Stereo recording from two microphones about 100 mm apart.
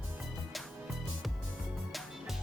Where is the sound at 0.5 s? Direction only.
Centre (ahead or behind).